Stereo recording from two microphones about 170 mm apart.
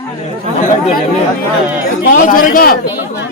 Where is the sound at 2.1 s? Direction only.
55° left (ahead or behind).